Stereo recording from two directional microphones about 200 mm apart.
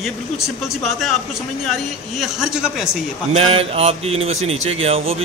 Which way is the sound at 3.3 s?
30° right (ahead or behind).